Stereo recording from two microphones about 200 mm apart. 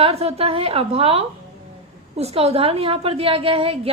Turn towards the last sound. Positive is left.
turn(degrees=-30)  # may be behind; listen again after turning